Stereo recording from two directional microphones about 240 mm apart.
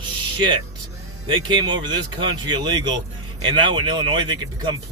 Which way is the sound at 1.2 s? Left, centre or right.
Centre.